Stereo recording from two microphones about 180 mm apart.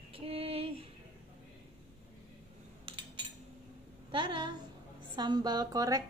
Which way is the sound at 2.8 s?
30° right (ahead or behind).